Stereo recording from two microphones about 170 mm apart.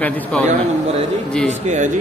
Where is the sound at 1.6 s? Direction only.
45° right (ahead or behind).